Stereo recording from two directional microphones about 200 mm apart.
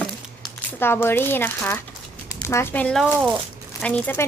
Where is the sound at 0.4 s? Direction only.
10° left (ahead or behind).